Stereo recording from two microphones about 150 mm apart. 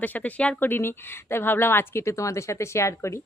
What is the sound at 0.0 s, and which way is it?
Speech, 10° left (ahead or behind).